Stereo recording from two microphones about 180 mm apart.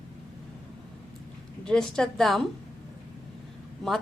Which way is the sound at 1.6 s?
5° left (ahead or behind).